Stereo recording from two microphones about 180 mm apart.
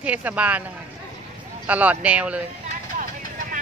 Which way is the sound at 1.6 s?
10° right (ahead or behind).